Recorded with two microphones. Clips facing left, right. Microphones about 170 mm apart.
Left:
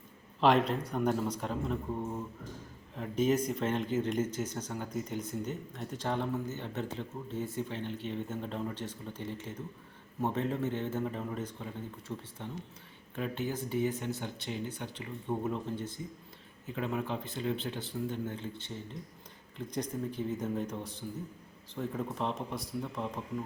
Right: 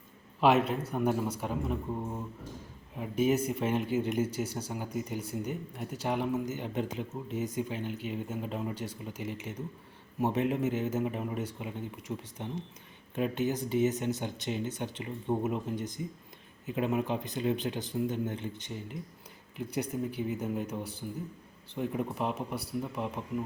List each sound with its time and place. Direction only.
0.3 s speech: 5° right (ahead or behind)
9.1 s speech: 90° right
10.2 s speech: 10° right (ahead or behind)